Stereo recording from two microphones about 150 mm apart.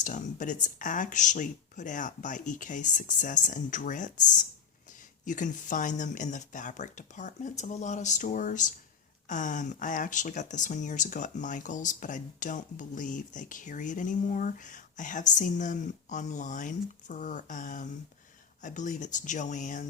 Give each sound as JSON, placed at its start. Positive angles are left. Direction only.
{"t": 0.0, "sound": "speech", "side_deg": 60}